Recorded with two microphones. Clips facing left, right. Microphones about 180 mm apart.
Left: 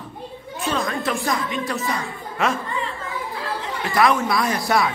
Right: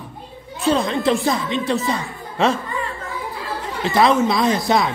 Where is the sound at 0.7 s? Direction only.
25° right (ahead or behind).